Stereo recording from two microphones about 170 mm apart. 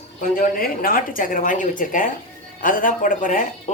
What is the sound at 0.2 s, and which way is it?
A man's voice, 55° left (ahead or behind).